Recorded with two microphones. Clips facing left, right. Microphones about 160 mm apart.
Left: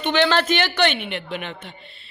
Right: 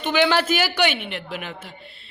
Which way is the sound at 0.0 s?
10° right (ahead or behind).